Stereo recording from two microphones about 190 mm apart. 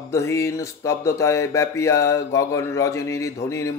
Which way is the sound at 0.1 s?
15° left (ahead or behind).